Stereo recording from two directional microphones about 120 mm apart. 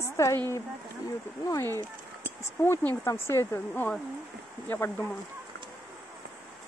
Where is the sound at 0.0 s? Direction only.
25° left (ahead or behind).